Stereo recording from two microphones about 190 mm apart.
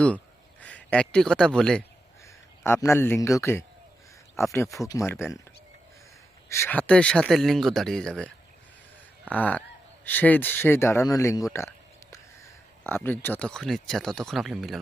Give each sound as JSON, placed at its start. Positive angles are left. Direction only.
{"t": 0.6, "sound": "a man's voice", "side_deg": 5}
{"t": 6.5, "sound": "speech", "side_deg": 10}
{"t": 9.3, "sound": "speech", "side_deg": 10}
{"t": 12.8, "sound": "speech", "side_deg": 10}